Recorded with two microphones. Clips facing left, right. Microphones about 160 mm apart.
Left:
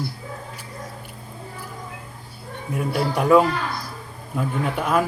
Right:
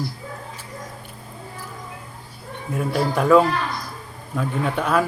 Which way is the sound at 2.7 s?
10° left (ahead or behind).